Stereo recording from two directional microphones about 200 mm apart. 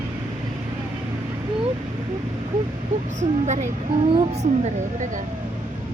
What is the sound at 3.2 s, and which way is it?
Speech, 35° right (ahead or behind).